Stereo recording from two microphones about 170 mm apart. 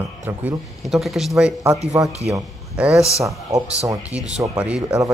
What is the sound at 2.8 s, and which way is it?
Speech, 5° right (ahead or behind).